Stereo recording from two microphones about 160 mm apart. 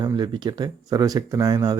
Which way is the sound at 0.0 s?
25° right (ahead or behind).